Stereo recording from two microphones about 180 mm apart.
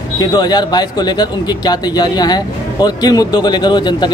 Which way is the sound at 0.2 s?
20° left (ahead or behind).